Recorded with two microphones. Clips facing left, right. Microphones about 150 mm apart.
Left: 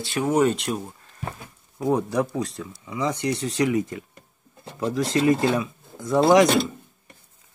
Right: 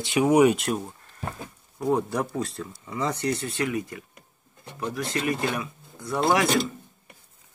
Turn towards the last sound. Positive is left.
turn(degrees=20)  # may be behind; listen again after turning